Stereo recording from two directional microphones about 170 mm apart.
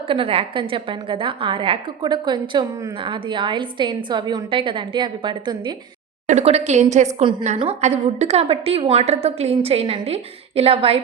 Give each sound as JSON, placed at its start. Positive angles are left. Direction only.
{"t": 0.1, "sound": "a woman's voice", "side_deg": -35}
{"t": 6.2, "sound": "a woman's voice", "side_deg": -40}